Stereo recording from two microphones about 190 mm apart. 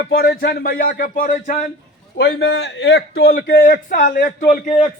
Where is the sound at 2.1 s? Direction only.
65° left (ahead or behind); by 4.7 s 45° left (ahead or behind).